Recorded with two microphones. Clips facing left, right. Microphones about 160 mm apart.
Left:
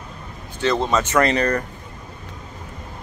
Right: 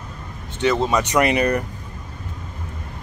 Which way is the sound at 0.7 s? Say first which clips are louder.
Left 2 dB; 10° right (ahead or behind).